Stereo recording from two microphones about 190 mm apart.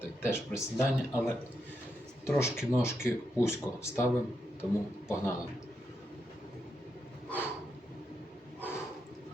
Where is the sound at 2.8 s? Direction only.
15° left (ahead or behind).